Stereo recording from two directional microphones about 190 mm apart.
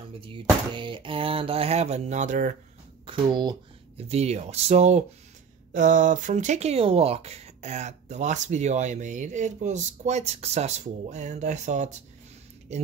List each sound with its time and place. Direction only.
0.2 s speech: 25° right (ahead or behind); by 2.5 s 40° right (ahead or behind)
3.1 s speech: 25° right (ahead or behind)